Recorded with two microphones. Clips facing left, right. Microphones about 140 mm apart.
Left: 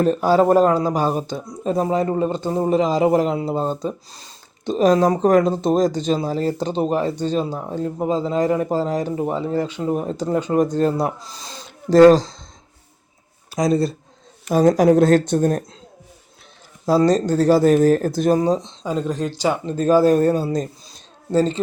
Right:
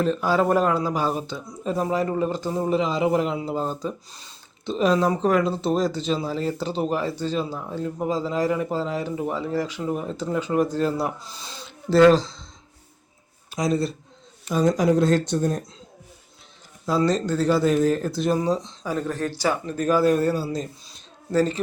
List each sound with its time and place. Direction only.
0.0 s speech: 45° left (ahead or behind)
0.3 s speech: 30° left (ahead or behind)
2.6 s speech: 40° left (ahead or behind)
13.5 s speech: 40° left (ahead or behind)
14.4 s speech: 50° left (ahead or behind)
16.8 s speech: 40° left (ahead or behind)
18.4 s speech: 30° left (ahead or behind)
21.3 s speech: 25° left (ahead or behind)